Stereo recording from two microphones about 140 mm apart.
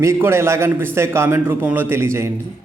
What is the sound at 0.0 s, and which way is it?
A man's voice, 15° right (ahead or behind).